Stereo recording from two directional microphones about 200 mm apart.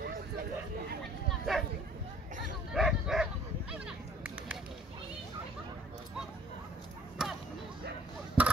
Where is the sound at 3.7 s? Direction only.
5° right (ahead or behind).